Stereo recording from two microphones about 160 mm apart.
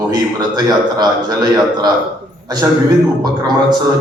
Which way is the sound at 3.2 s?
25° right (ahead or behind).